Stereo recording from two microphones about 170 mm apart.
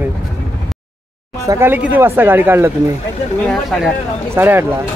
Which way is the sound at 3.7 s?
5° left (ahead or behind).